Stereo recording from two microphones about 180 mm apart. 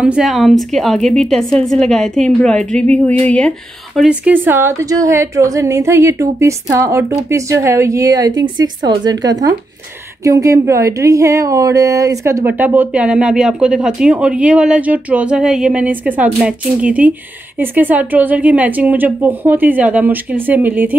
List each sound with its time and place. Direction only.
0.0 s a woman's voice: 5° right (ahead or behind)